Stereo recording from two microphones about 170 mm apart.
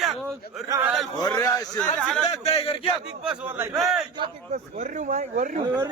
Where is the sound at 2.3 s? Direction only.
35° left (ahead or behind).